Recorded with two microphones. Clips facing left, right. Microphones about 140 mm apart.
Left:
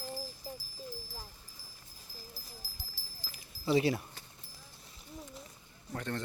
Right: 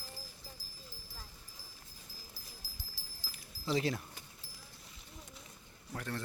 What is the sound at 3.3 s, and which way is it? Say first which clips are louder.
Keys jangling: left 5 dB; centre (ahead or behind).